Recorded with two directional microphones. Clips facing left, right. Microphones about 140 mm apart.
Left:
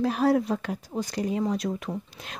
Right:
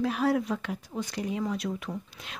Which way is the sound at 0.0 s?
40° left (ahead or behind).